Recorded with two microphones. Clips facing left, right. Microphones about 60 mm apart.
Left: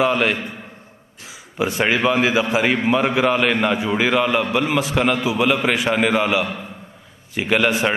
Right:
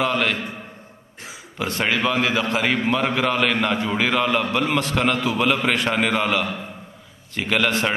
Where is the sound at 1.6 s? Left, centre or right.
Centre.